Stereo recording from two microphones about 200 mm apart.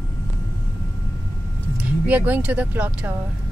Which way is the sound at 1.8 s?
5° right (ahead or behind).